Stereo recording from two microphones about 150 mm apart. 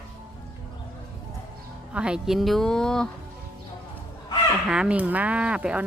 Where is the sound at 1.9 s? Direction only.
5° right (ahead or behind).